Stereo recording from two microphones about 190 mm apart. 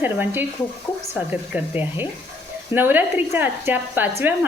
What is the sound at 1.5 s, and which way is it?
Speech, 10° right (ahead or behind).